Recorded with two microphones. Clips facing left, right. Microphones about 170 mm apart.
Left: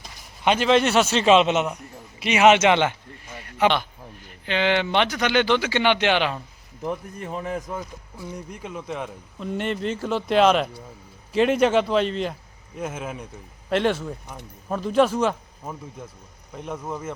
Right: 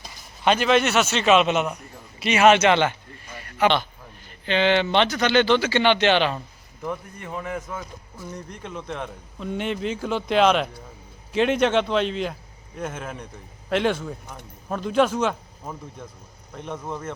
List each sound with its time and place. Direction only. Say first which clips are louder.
0.4 s a man's voice: left 1 dB; 20° left (ahead or behind)
3.3 s a sound: even; 20° left (ahead or behind)
4.3 s speech: right 2 dB; 10° left (ahead or behind)
7.3 s a man's voice: left 1 dB; 25° left (ahead or behind)
7.8 s a man's voice: left 2 dB; 10° left (ahead or behind)